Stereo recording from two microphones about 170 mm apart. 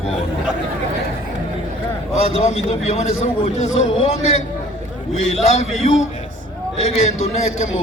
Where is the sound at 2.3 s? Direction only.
40° left (ahead or behind).